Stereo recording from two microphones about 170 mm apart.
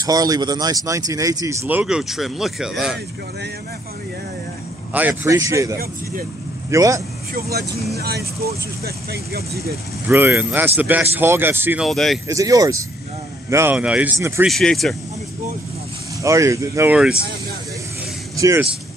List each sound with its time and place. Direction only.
0.0 s speech: 20° right (ahead or behind); by 3.0 s 5° right (ahead or behind)
4.9 s speech: 15° right (ahead or behind)
7.3 s speech: 65° right (ahead or behind)
10.0 s speech: 10° right (ahead or behind)
11.8 s speech: centre (ahead or behind)
12.3 s speech: 20° right (ahead or behind); by 15.0 s 5° left (ahead or behind)
16.2 s speech: 20° right (ahead or behind)
18.3 s speech: 20° right (ahead or behind)